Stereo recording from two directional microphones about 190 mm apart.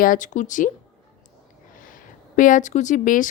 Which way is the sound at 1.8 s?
45° left (ahead or behind).